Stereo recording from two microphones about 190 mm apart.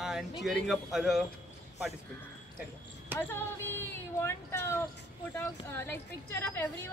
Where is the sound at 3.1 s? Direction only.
10° left (ahead or behind).